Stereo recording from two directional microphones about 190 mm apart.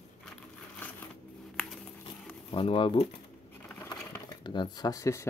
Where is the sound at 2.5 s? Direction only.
30° left (ahead or behind).